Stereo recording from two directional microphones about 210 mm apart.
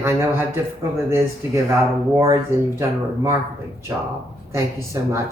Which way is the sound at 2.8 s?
10° right (ahead or behind).